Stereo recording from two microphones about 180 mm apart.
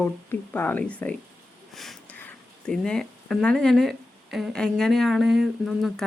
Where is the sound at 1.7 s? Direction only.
Centre (ahead or behind).